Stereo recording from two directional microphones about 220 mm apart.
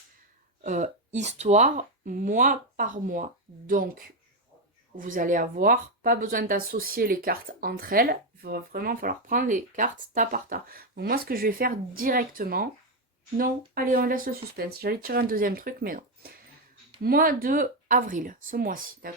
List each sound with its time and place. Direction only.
0.6 s speech: 35° right (ahead or behind)
13.7 s speech: 40° right (ahead or behind)